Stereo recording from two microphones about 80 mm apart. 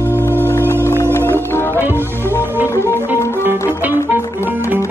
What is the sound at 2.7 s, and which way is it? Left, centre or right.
Music, left.